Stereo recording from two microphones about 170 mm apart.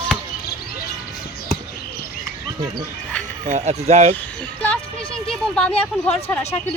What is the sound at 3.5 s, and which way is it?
Speech, 40° right (ahead or behind).